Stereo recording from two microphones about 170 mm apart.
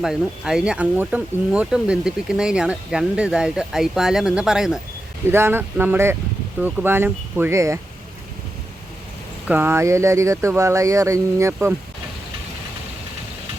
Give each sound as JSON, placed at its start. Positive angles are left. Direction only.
{"t": 0.0, "sound": "speech", "side_deg": -5}
{"t": 9.5, "sound": "speech", "side_deg": -10}